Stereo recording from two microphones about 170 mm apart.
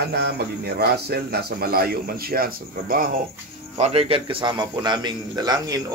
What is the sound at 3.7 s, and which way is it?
Speech, 40° right (ahead or behind).